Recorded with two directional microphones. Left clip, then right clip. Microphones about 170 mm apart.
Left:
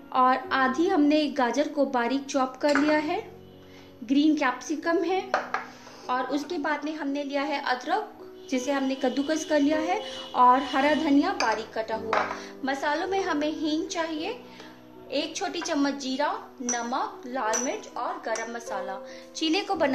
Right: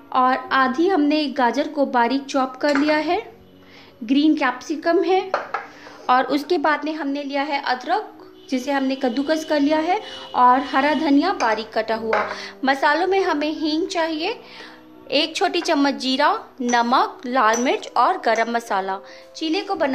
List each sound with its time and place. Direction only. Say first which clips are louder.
0.1 s a woman's voice: right 5 dB; 20° right (ahead or behind)
6.0 s a woman's voice: right 10 dB; 45° right (ahead or behind)
15.0 s a woman's voice: right 10 dB; 40° right (ahead or behind)
19.3 s a woman's voice: right 3 dB; centre (ahead or behind)